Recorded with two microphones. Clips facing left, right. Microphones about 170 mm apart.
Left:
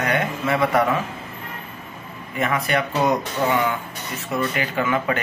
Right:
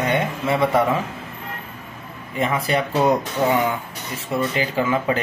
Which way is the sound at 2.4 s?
30° right (ahead or behind).